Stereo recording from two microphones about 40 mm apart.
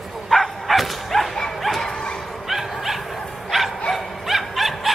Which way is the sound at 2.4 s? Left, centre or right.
Centre.